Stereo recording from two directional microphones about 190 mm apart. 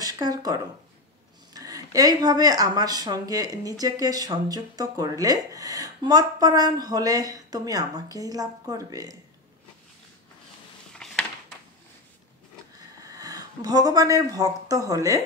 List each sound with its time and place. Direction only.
0.0 s speech: 20° right (ahead or behind)
10.9 s a sound: 5° left (ahead or behind)
13.0 s speech: 20° right (ahead or behind)